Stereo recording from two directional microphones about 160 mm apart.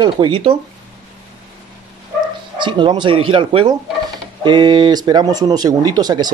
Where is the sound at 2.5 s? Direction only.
30° right (ahead or behind).